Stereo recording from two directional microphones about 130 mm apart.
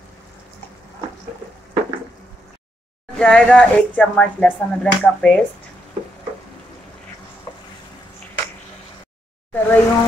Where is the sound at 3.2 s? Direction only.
5° left (ahead or behind).